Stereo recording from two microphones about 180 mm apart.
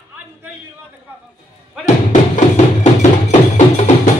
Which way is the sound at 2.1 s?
40° left (ahead or behind).